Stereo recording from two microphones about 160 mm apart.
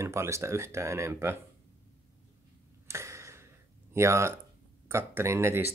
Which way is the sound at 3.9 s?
15° right (ahead or behind).